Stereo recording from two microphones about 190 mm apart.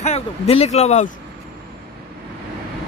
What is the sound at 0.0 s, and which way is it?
Speech, 35° left (ahead or behind).